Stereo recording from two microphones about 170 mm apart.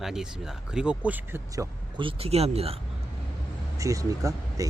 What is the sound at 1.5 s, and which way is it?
Speech, 25° right (ahead or behind).